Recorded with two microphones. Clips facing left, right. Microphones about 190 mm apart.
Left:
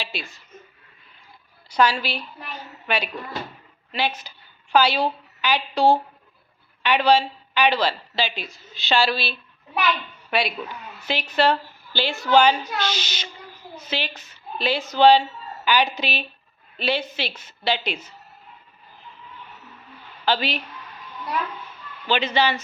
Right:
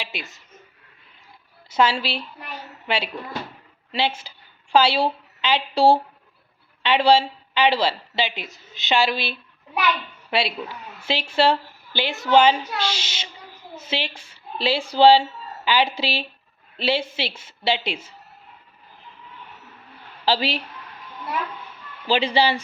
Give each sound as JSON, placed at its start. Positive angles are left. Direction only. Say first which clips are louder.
{"t": 0.0, "sound": "a woman's voice", "louder": "left 1 dB", "side_deg": -20}
{"t": 1.7, "sound": "a woman's voice", "louder": "even", "side_deg": -25}
{"t": 20.2, "sound": "a woman's voice", "louder": "right 1 dB", "side_deg": -30}
{"t": 22.0, "sound": "speech", "louder": "right 2 dB", "side_deg": -30}